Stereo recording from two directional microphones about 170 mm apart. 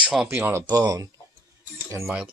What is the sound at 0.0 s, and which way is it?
Speech, 5° right (ahead or behind).